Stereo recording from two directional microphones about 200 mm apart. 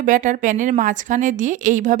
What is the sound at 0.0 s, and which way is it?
Speech, 40° right (ahead or behind).